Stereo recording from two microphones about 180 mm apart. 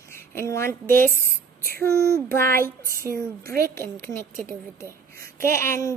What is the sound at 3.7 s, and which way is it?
Speech, 15° left (ahead or behind).